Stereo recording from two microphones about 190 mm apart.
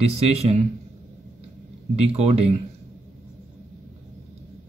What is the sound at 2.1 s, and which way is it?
Speech, 35° right (ahead or behind).